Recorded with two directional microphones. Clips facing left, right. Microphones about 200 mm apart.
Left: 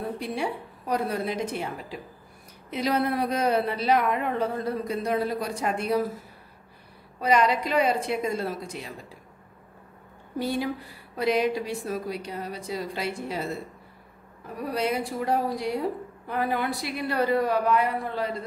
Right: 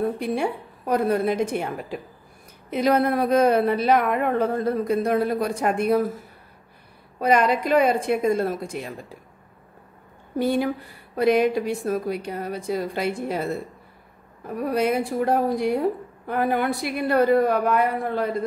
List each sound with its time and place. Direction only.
0.2 s a woman's voice: 55° right (ahead or behind)
7.2 s a woman's voice: 55° right (ahead or behind)
10.4 s a woman's voice: 55° right (ahead or behind)
14.7 s a woman's voice: 55° right (ahead or behind)